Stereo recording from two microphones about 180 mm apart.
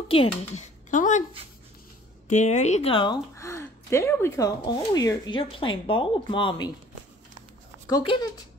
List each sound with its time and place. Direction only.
0.1 s speech: 30° left (ahead or behind)
0.8 s a woman's voice: 45° left (ahead or behind)
2.2 s speech: 40° left (ahead or behind)
3.3 s speech: 15° left (ahead or behind)
7.9 s speech: 20° left (ahead or behind)